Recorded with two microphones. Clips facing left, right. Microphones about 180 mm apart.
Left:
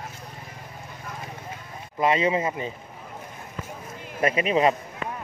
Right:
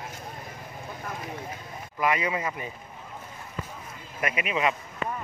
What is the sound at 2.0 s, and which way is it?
Speech, 25° left (ahead or behind).